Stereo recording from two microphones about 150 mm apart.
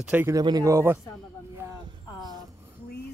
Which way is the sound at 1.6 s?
25° right (ahead or behind).